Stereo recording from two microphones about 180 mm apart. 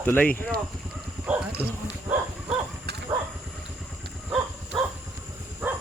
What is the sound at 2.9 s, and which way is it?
Livestock, 65° right (ahead or behind).